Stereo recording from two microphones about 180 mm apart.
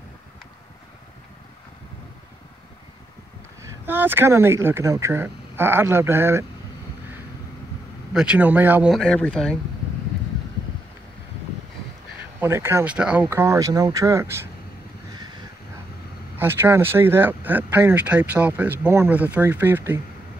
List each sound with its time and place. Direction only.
3.6 s speech: 10° right (ahead or behind)
8.1 s speech: 5° right (ahead or behind)
8.9 s speech: 5° left (ahead or behind)
12.4 s speech: 15° right (ahead or behind)
16.3 s speech: 10° right (ahead or behind)